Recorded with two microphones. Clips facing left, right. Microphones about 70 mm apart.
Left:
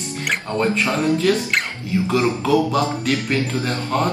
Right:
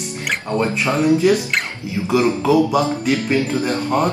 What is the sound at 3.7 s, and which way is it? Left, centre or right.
Speech, centre.